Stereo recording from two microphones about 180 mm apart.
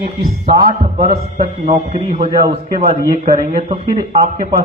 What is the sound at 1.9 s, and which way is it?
Speech, 45° right (ahead or behind).